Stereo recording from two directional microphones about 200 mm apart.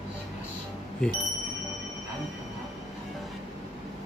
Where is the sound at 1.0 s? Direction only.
5° left (ahead or behind).